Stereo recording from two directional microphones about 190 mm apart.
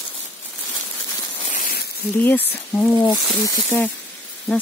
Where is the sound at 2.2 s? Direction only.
10° left (ahead or behind).